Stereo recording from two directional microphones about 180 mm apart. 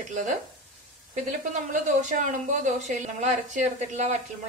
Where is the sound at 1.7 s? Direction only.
45° right (ahead or behind).